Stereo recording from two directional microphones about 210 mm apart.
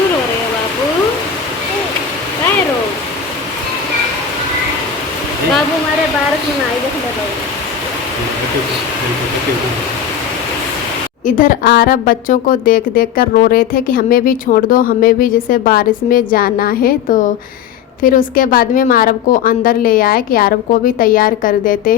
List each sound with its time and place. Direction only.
11.3 s a woman's voice: 40° left (ahead or behind)